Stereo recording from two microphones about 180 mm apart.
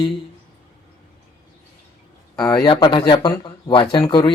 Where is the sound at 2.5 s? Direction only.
20° left (ahead or behind).